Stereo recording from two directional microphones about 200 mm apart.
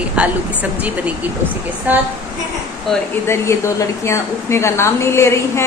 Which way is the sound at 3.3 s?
15° left (ahead or behind).